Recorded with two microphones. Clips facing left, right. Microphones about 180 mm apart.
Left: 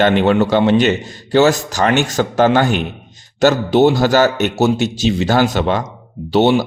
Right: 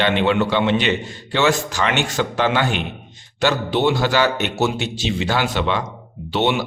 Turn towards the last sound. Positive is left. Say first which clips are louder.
# left 7 dB
turn(degrees=40)  # may be behind; listen again after turning